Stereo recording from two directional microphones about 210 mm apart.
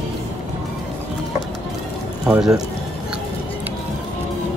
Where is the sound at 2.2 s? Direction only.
5° right (ahead or behind).